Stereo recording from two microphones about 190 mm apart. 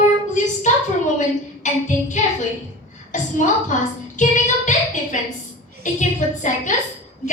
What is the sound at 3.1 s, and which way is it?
Child singing, 40° left (ahead or behind).